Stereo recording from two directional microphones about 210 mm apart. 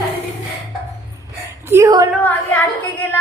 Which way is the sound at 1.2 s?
10° right (ahead or behind).